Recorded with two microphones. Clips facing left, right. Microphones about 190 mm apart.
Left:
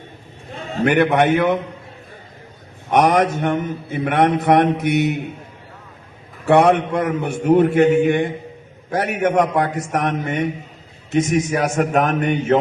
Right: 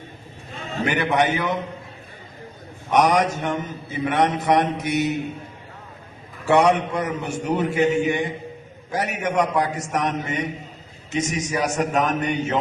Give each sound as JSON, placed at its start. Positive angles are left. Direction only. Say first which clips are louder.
{"t": 0.9, "sound": "a man's voice", "louder": "left 6 dB", "side_deg": 60}
{"t": 2.9, "sound": "a man's voice", "louder": "left 3 dB", "side_deg": 55}
{"t": 6.4, "sound": "a man's voice", "louder": "left 4 dB", "side_deg": 60}